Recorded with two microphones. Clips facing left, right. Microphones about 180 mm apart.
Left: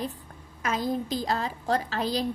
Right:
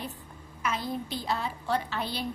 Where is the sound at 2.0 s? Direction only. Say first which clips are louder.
Left 6 dB; 90° left.